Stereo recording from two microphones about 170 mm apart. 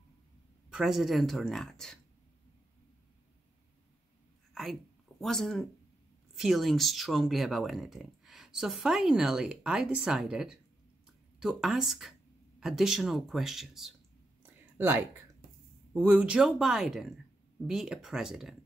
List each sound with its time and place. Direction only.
0.7 s speech: centre (ahead or behind)
5.2 s speech: centre (ahead or behind)
14.4 s a sound: 10° right (ahead or behind)
15.9 s speech: 10° right (ahead or behind)